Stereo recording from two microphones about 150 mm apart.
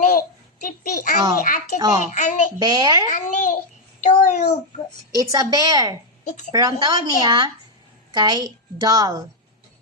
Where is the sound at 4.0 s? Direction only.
50° left (ahead or behind).